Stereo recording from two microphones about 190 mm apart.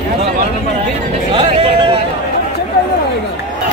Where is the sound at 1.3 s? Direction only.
25° right (ahead or behind).